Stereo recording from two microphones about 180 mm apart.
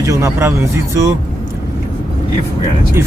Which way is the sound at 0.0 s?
15° right (ahead or behind).